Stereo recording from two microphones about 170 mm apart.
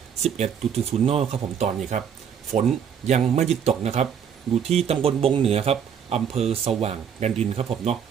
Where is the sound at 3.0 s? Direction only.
40° right (ahead or behind).